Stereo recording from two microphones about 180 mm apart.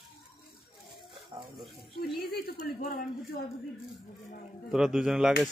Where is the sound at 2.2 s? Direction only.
55° left (ahead or behind).